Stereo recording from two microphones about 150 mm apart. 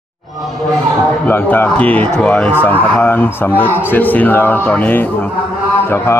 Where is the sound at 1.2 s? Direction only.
15° left (ahead or behind).